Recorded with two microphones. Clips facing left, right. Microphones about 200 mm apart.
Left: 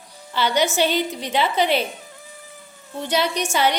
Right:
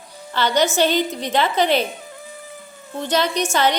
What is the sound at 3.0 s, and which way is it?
Speech, 10° left (ahead or behind).